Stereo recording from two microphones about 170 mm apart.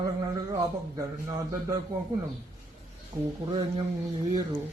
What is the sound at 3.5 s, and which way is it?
Speech, 30° right (ahead or behind).